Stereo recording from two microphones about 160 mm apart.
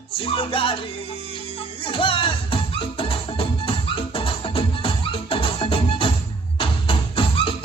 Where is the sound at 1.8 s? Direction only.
35° left (ahead or behind).